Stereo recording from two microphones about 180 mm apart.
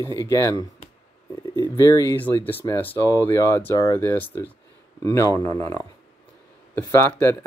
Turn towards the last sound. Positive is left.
turn(degrees=15)  # may be behind; listen again after turning